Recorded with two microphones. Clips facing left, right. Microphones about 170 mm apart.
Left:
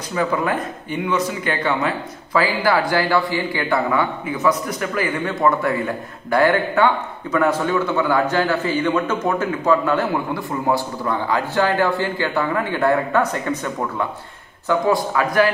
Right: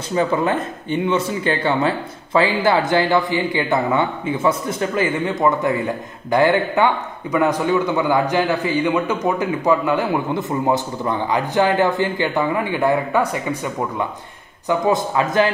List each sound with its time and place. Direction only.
0.1 s a man's voice: 25° right (ahead or behind); by 14.0 s 10° right (ahead or behind)
14.7 s speech: 20° right (ahead or behind)